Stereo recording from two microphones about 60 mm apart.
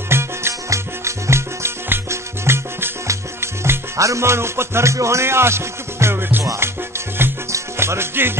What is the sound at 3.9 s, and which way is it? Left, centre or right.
Music, right.